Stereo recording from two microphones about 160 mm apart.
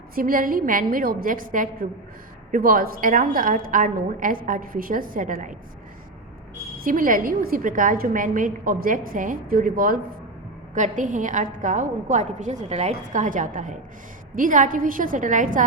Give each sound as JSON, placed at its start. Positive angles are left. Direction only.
{"t": 0.1, "sound": "a woman's voice", "side_deg": -60}
{"t": 6.8, "sound": "a woman's voice", "side_deg": -60}
{"t": 10.8, "sound": "a woman's voice", "side_deg": -50}